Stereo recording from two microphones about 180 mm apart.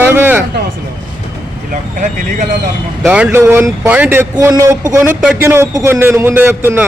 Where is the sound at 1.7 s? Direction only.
45° right (ahead or behind).